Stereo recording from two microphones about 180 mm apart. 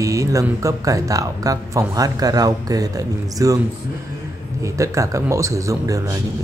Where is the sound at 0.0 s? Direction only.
15° right (ahead or behind).